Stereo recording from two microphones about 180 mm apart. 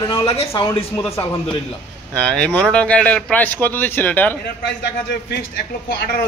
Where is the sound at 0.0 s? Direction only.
30° left (ahead or behind).